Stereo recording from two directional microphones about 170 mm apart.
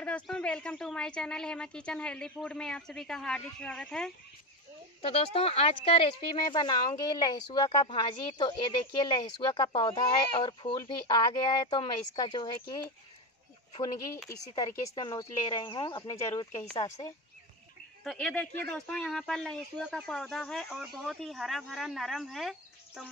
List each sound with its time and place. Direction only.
0.0 s speech: 5° left (ahead or behind)
5.0 s a woman's voice: 35° left (ahead or behind); by 17.1 s 20° left (ahead or behind)
18.0 s speech: 5° left (ahead or behind)